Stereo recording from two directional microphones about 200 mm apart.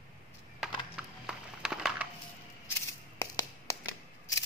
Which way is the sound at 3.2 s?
15° left (ahead or behind).